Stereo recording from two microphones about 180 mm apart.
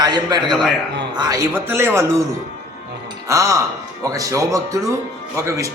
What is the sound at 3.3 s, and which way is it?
A man's voice, 15° right (ahead or behind).